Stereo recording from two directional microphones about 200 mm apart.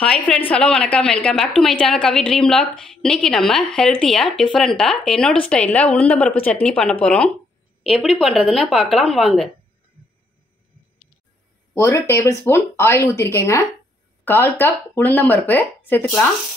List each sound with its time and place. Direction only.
0.0 s a woman's voice: 5° left (ahead or behind)
11.7 s speech: 15° left (ahead or behind)